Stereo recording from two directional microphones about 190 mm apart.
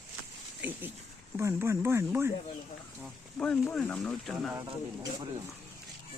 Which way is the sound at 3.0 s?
5° left (ahead or behind).